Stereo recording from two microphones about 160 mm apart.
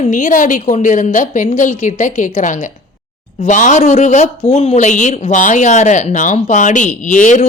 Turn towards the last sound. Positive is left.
turn(degrees=50)  # may be behind; listen again after turning